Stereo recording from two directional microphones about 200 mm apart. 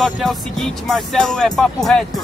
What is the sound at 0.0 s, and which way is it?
Speech, centre (ahead or behind).